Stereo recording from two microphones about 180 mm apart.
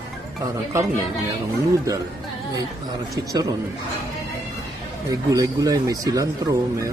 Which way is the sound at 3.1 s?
20° right (ahead or behind).